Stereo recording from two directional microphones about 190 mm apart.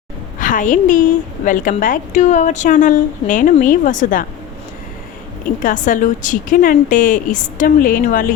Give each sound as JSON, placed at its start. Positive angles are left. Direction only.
{"t": 0.3, "sound": "a woman's voice", "side_deg": 45}
{"t": 5.6, "sound": "a woman's voice", "side_deg": 45}